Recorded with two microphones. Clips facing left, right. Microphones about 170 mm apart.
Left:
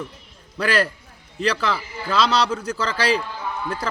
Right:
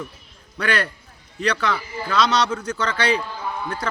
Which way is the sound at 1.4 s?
30° left (ahead or behind).